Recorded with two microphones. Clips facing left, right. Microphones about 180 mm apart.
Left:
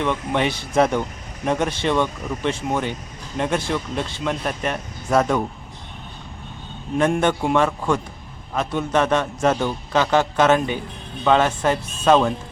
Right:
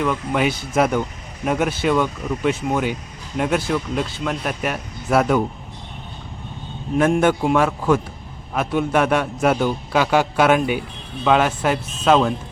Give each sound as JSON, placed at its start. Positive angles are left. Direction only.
{"t": 0.0, "sound": "speech", "side_deg": -5}
{"t": 6.9, "sound": "a man's voice", "side_deg": -5}